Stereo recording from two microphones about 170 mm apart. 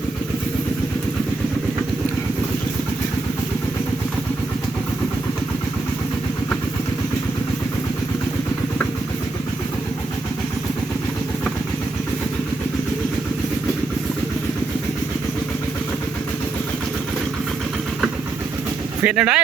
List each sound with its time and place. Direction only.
19.0 s speech: 5° right (ahead or behind)